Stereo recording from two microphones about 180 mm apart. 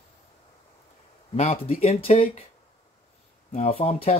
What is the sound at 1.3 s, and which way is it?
Speech, 35° left (ahead or behind).